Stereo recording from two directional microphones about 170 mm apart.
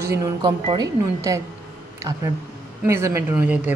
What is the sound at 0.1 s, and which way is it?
A woman's voice, 20° right (ahead or behind).